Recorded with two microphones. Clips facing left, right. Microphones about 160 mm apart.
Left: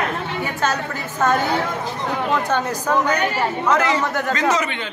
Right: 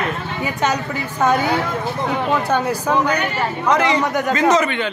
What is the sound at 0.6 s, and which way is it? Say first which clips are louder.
A man's voice: right 3 dB; 15° right (ahead or behind).